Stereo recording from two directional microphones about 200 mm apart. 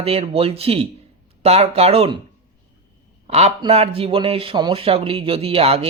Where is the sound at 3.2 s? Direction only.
30° right (ahead or behind).